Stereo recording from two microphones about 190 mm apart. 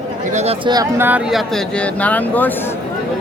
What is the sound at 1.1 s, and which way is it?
Speech, 5° right (ahead or behind).